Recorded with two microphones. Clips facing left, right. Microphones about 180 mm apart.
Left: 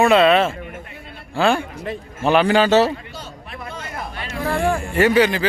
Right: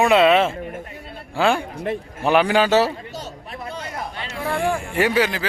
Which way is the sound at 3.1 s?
35° right (ahead or behind).